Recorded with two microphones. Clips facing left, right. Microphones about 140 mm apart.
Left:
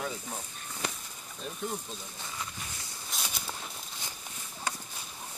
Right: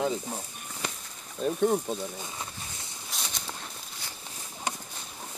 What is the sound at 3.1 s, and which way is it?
Walk, 5° left (ahead or behind).